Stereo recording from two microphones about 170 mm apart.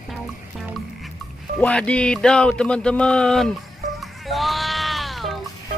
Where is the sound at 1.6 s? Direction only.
5° left (ahead or behind).